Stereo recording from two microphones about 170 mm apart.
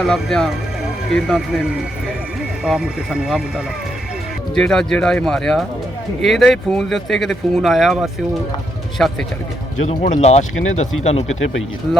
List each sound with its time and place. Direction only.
0.1 s speech: centre (ahead or behind)
9.8 s speech: 40° left (ahead or behind)